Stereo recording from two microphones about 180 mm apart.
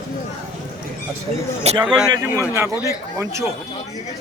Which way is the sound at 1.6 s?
35° right (ahead or behind).